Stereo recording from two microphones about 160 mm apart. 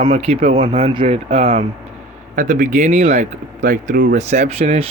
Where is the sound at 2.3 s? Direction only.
55° right (ahead or behind).